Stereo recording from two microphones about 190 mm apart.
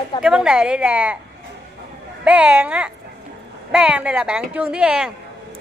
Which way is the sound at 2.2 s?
5° right (ahead or behind).